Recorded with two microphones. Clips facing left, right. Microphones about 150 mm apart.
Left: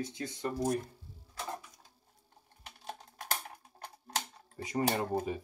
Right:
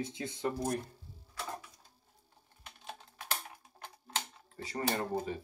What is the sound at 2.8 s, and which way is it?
Typing, 45° left (ahead or behind).